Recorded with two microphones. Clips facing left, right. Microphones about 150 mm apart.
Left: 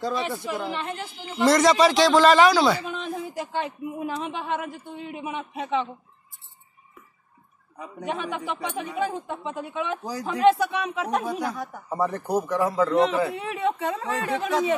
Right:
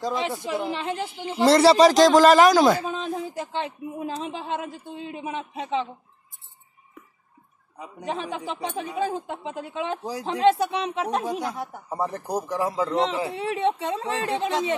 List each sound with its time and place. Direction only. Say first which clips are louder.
0.0 s a man's voice: even; 15° right (ahead or behind)
7.8 s a man's voice: even; 30° right (ahead or behind)